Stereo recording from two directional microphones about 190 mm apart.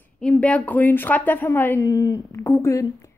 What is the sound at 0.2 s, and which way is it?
A woman's voice, 5° left (ahead or behind).